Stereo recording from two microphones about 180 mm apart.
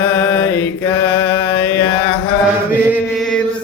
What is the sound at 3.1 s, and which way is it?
Mantra, 5° left (ahead or behind).